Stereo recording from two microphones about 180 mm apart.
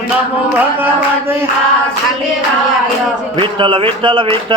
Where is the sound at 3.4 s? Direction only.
30° right (ahead or behind).